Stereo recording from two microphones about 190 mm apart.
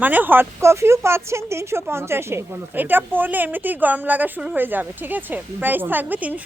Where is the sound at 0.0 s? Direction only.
10° right (ahead or behind).